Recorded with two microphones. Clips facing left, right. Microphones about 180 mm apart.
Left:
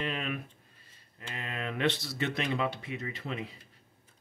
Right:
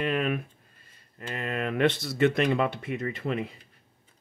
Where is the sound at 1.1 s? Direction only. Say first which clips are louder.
Right 8 dB; 55° right (ahead or behind).